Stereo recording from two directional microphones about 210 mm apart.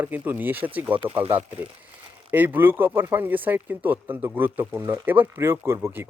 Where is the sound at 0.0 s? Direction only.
10° right (ahead or behind).